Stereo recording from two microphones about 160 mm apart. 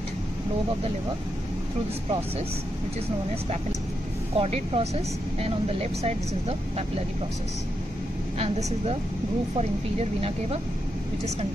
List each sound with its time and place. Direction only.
4.4 s speech: 35° right (ahead or behind)
8.4 s speech: 40° right (ahead or behind)